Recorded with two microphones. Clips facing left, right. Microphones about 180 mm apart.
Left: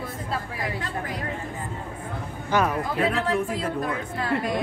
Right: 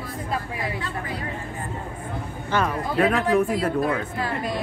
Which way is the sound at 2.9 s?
60° right (ahead or behind).